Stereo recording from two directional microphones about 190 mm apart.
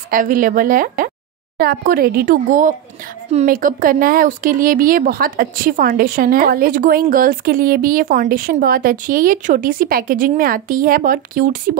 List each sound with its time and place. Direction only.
0.1 s speech: 45° right (ahead or behind)